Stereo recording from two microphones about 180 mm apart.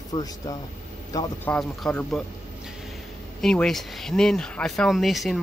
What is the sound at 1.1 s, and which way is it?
Speech, 10° left (ahead or behind).